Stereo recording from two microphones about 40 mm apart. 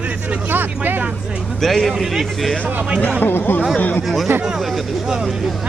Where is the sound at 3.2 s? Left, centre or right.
Left.